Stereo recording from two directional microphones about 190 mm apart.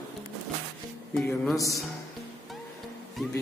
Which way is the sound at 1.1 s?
Centre (ahead or behind).